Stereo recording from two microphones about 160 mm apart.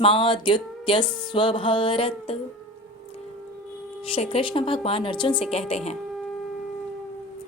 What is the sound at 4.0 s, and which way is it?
Speech, 35° left (ahead or behind).